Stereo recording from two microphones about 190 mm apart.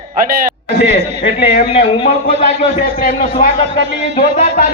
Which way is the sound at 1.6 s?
25° left (ahead or behind).